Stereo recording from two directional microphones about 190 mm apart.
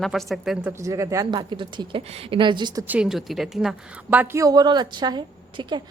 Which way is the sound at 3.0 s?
Centre (ahead or behind).